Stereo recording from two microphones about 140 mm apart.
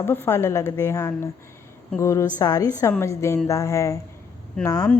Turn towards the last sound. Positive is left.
turn(degrees=25)  # may be behind; listen again after turning